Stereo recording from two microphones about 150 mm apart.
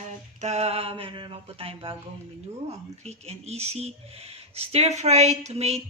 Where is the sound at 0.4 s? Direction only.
45° right (ahead or behind).